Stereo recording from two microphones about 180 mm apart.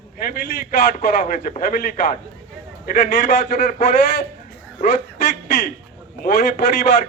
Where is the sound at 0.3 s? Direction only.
50° left (ahead or behind).